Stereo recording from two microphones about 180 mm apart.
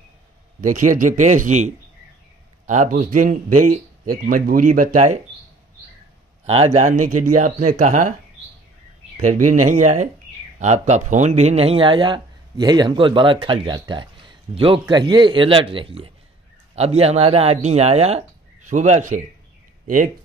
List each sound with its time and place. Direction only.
0.6 s speech: 45° right (ahead or behind)
6.4 s speech: 35° right (ahead or behind)
9.1 s speech: 45° right (ahead or behind)